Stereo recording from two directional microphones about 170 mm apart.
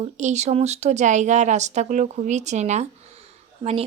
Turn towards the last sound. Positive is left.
turn(degrees=-35)  # may be behind; listen again after turning